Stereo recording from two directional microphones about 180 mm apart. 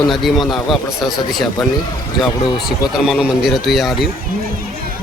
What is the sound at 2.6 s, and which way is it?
Speech, centre (ahead or behind).